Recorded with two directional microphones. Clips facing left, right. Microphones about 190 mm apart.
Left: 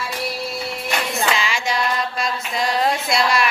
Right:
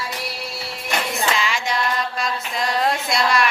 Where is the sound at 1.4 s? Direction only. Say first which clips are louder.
Left 1 dB; centre (ahead or behind).